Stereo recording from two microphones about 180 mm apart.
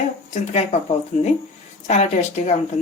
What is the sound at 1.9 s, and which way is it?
Speech, 40° left (ahead or behind).